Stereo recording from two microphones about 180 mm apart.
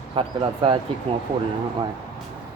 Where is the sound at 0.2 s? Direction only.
30° right (ahead or behind).